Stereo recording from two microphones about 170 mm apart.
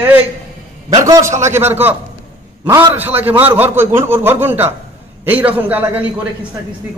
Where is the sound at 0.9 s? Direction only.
20° right (ahead or behind).